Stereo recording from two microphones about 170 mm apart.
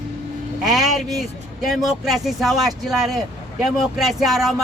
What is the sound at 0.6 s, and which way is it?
Speech, centre (ahead or behind).